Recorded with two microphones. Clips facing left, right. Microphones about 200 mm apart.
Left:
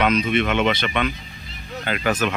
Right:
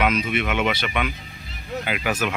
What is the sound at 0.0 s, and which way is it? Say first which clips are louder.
A man's voice: left 3 dB; 5° right (ahead or behind).